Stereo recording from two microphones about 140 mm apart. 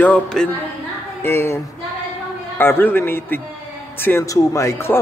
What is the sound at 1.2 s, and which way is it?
Speech, 15° left (ahead or behind).